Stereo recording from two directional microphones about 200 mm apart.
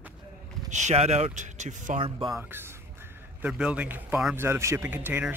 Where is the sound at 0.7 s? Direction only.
35° right (ahead or behind).